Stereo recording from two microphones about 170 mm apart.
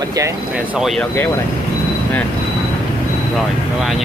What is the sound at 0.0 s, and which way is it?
Speech, 20° right (ahead or behind).